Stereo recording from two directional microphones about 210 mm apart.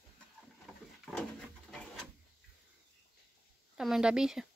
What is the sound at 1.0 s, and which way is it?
Pigeon, 5° left (ahead or behind).